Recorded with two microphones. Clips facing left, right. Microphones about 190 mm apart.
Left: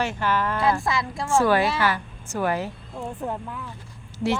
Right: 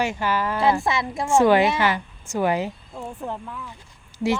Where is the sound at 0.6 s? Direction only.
25° right (ahead or behind).